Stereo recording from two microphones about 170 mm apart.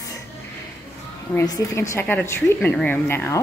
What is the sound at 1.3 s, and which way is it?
A woman's voice, 20° left (ahead or behind).